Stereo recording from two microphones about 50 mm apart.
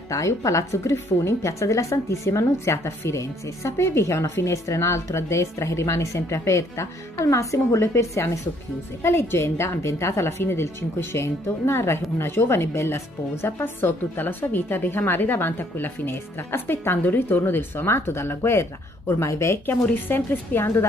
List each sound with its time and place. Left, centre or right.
0.1 s a woman's voice: left
9.0 s speech: left
9.8 s a woman's voice: left
10.4 s speech: left
19.6 s speech: left